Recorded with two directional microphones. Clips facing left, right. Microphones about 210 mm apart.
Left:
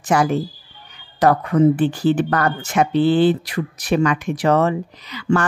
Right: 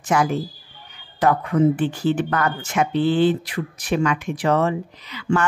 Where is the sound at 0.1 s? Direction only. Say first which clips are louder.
Left 3 dB; 35° left (ahead or behind).